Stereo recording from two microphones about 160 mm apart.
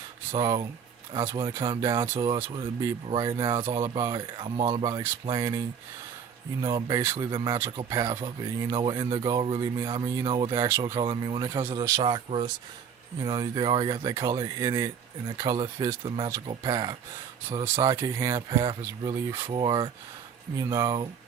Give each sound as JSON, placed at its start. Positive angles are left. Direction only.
{"t": 0.3, "sound": "speech", "side_deg": -25}
{"t": 11.0, "sound": "speech", "side_deg": -30}
{"t": 17.9, "sound": "speech", "side_deg": -20}
{"t": 18.3, "sound": "speech", "side_deg": -30}